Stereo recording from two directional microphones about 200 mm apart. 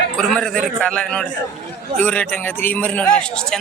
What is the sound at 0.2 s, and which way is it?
A man's voice, 5° left (ahead or behind).